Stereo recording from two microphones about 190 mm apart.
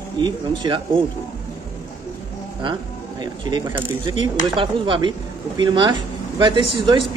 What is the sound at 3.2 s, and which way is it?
Speech, 20° right (ahead or behind).